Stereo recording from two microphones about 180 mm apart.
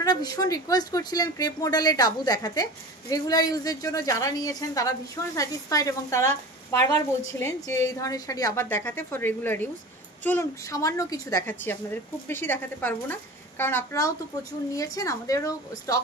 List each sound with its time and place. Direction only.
0.0 s a woman's voice: 20° left (ahead or behind)